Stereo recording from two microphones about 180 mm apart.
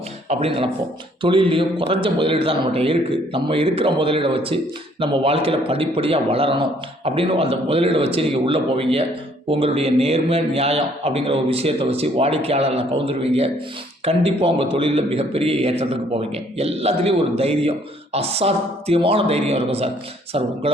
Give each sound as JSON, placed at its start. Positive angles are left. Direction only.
{"t": 0.3, "sound": "a man's voice", "side_deg": -35}